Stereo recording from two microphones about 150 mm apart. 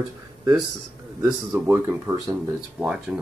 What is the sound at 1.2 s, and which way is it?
Speech, 15° right (ahead or behind).